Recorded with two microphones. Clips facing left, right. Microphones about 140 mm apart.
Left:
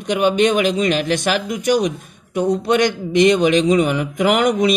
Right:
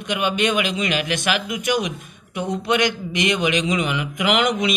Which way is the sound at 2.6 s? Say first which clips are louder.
Left 4 dB; 50° left (ahead or behind).